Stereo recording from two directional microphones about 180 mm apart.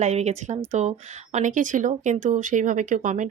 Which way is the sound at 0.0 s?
35° right (ahead or behind).